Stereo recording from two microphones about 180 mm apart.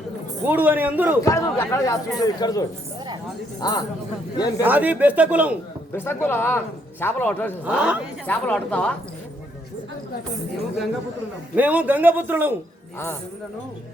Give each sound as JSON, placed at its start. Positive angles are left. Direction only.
{"t": 0.4, "sound": "a man's voice", "side_deg": -10}
{"t": 1.2, "sound": "speech", "side_deg": 15}
{"t": 4.6, "sound": "a man's voice", "side_deg": -10}
{"t": 5.9, "sound": "speech", "side_deg": 10}
{"t": 7.6, "sound": "a man's voice", "side_deg": -5}
{"t": 8.3, "sound": "speech", "side_deg": 10}
{"t": 11.5, "sound": "a man's voice", "side_deg": -10}